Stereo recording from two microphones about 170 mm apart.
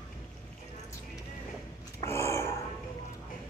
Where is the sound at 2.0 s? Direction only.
15° left (ahead or behind).